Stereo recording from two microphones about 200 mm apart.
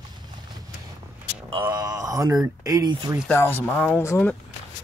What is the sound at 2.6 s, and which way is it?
Speech, 15° right (ahead or behind).